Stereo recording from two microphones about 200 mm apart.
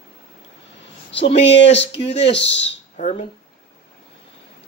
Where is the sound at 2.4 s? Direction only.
30° left (ahead or behind).